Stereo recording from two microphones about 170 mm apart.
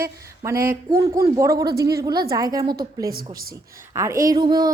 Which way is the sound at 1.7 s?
65° right (ahead or behind).